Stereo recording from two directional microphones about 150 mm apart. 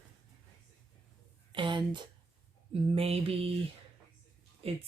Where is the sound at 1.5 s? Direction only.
35° right (ahead or behind).